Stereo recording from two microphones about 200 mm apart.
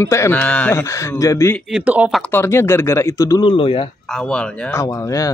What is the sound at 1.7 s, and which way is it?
Speech, 5° right (ahead or behind).